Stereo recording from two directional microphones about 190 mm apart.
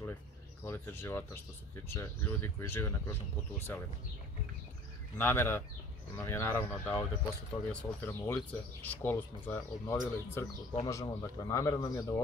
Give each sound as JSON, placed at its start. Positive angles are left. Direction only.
{"t": 0.7, "sound": "speech", "side_deg": 15}
{"t": 5.1, "sound": "speech", "side_deg": 10}